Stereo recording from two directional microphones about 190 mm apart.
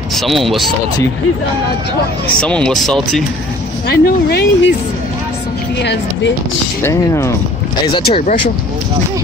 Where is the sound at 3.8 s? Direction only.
55° left (ahead or behind).